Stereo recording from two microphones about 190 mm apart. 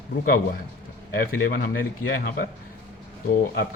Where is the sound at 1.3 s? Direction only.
70° left (ahead or behind).